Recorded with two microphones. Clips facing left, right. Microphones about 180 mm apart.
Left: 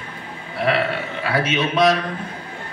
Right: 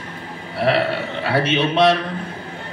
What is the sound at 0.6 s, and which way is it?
A man's voice, 30° right (ahead or behind).